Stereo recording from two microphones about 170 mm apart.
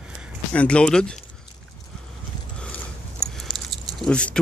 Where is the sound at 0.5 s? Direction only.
5° left (ahead or behind).